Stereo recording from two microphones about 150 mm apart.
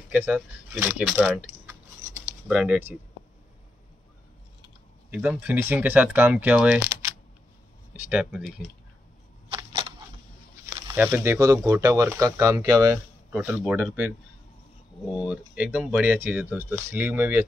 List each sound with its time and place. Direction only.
0.1 s speech: 10° right (ahead or behind)
2.4 s speech: 5° right (ahead or behind)
5.1 s speech: 10° right (ahead or behind)
6.8 s a sound: 25° right (ahead or behind)
7.9 s speech: 10° right (ahead or behind)
9.5 s a sound: 30° right (ahead or behind)
11.0 s speech: 15° right (ahead or behind)
13.3 s speech: 10° right (ahead or behind)
15.1 s speech: 5° right (ahead or behind)